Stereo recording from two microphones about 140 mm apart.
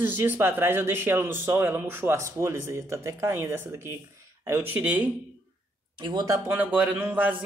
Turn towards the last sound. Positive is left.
turn(degrees=-10)  # may be behind; listen again after turning